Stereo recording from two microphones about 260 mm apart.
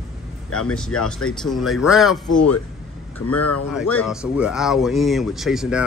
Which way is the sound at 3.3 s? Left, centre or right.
Left.